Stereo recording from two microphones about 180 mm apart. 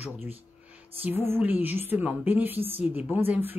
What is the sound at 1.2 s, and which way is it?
Speech, 10° right (ahead or behind).